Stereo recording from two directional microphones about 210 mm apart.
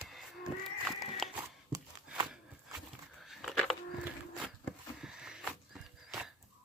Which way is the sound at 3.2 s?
Centre (ahead or behind).